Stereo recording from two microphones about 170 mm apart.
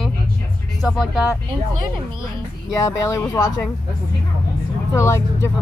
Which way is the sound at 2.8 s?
15° left (ahead or behind).